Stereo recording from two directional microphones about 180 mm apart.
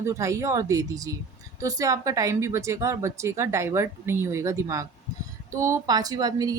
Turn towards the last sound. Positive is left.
turn(degrees=-20)  # may be behind; listen again after turning